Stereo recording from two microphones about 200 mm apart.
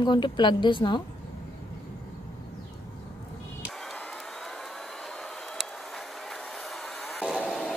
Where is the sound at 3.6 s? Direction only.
Centre (ahead or behind).